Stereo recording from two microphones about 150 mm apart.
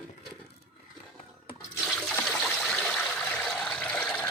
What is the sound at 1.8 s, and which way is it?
Trickle, 5° left (ahead or behind).